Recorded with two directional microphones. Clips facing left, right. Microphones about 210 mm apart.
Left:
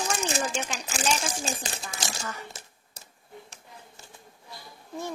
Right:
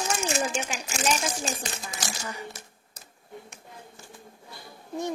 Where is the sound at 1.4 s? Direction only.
30° left (ahead or behind).